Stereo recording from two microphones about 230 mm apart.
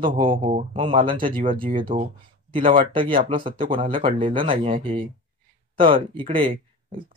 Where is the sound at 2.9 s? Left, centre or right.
Right.